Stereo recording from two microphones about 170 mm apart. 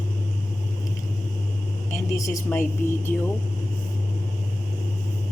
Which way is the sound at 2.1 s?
20° left (ahead or behind).